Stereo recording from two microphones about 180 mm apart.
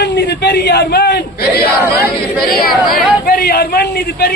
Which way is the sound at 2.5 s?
55° left (ahead or behind).